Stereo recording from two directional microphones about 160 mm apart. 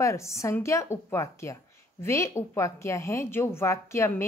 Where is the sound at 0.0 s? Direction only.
20° left (ahead or behind).